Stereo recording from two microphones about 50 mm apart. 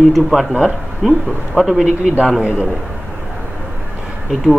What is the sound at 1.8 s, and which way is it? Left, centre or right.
Speech, right.